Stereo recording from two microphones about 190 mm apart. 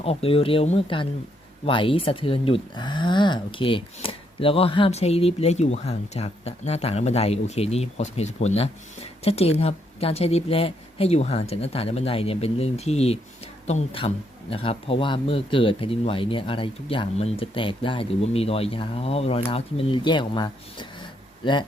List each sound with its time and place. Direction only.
0.0 s speech: 30° left (ahead or behind)